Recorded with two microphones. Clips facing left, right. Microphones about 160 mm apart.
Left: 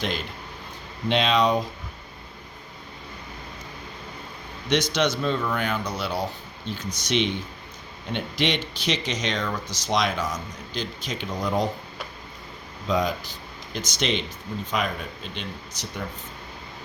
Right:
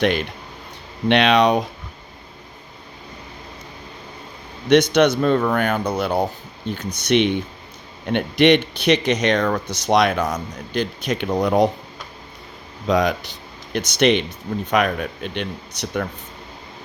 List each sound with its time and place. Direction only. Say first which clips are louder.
0.0 s speech: right 9 dB; 65° right (ahead or behind)
4.7 s speech: right 9 dB; 60° right (ahead or behind)
12.9 s speech: right 6 dB; 70° right (ahead or behind)